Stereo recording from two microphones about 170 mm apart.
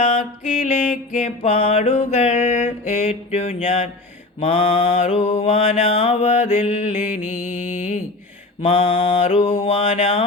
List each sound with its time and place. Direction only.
0.0 s mantra: 45° left (ahead or behind)
7.2 s music: 5° right (ahead or behind)
8.6 s mantra: 35° left (ahead or behind)